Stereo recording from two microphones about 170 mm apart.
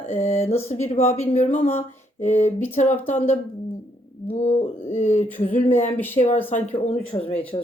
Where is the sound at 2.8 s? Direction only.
45° left (ahead or behind).